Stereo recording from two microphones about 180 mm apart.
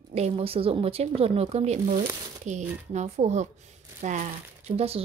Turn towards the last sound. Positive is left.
turn(degrees=-35)  # may be behind; listen again after turning